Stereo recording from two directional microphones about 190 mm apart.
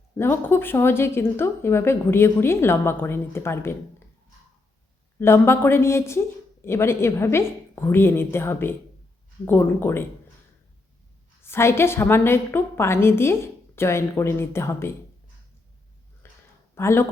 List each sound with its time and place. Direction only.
0.2 s speech: 10° left (ahead or behind)
5.2 s speech: 10° left (ahead or behind)
11.4 s speech: 15° left (ahead or behind)
16.2 s a sound: 15° left (ahead or behind)
16.7 s speech: 15° left (ahead or behind)